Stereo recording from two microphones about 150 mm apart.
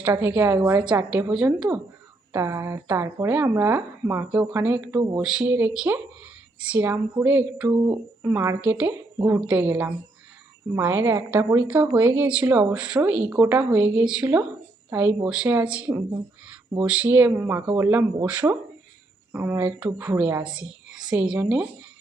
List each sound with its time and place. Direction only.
0.0 s a woman's voice: 10° right (ahead or behind)
2.3 s a woman's voice: 20° right (ahead or behind)